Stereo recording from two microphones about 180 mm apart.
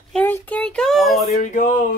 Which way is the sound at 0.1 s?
10° left (ahead or behind).